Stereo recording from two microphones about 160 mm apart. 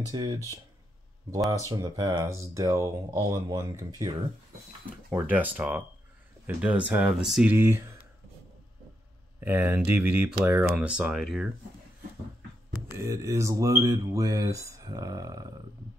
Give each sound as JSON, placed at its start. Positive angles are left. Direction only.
{"t": 0.1, "sound": "speech", "side_deg": -25}
{"t": 1.7, "sound": "speech", "side_deg": -25}
{"t": 5.3, "sound": "speech", "side_deg": -10}
{"t": 7.5, "sound": "speech", "side_deg": -15}
{"t": 9.4, "sound": "speech", "side_deg": -10}
{"t": 12.9, "sound": "speech", "side_deg": -20}